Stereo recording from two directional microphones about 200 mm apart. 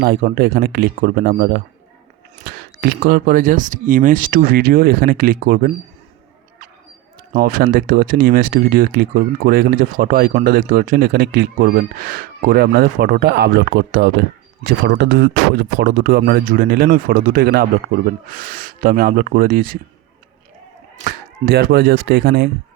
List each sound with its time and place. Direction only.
0.0 s speech: 50° right (ahead or behind)
7.3 s speech: 45° right (ahead or behind); by 15.4 s 60° right (ahead or behind)
15.8 s speech: 50° right (ahead or behind)
21.0 s speech: 50° right (ahead or behind)